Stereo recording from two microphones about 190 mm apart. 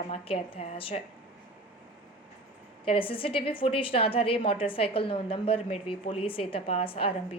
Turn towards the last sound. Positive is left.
turn(degrees=30)  # may be behind; listen again after turning